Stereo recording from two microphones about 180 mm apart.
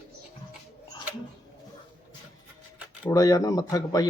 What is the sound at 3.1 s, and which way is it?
Speech, 20° left (ahead or behind).